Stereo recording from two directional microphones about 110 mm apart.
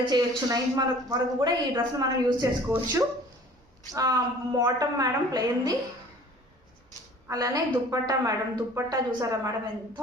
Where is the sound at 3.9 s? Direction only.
35° right (ahead or behind).